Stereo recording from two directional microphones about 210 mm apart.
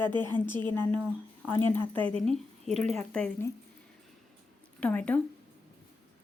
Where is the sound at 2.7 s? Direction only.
35° right (ahead or behind).